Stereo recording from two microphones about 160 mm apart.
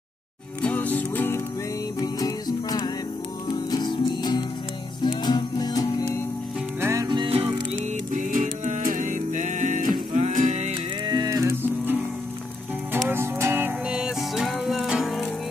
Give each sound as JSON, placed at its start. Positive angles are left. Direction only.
{"t": 0.6, "sound": "music", "side_deg": 10}
{"t": 2.0, "sound": "music", "side_deg": 25}
{"t": 6.8, "sound": "music", "side_deg": -20}
{"t": 8.1, "sound": "music", "side_deg": -55}
{"t": 11.1, "sound": "music", "side_deg": -25}
{"t": 13.1, "sound": "music", "side_deg": -15}